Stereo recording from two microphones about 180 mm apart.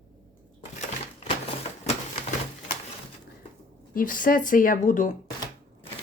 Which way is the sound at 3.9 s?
50° left (ahead or behind).